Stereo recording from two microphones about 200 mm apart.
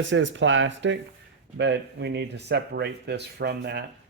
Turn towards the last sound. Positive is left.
turn(degrees=-55)  # may be behind; listen again after turning